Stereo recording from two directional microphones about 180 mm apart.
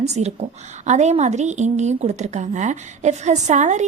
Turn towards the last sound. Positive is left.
turn(degrees=-40)  # may be behind; listen again after turning